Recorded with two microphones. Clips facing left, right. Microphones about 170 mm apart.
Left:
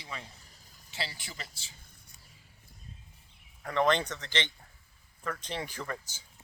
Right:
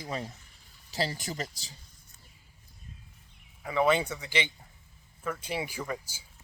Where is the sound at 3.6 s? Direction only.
5° right (ahead or behind).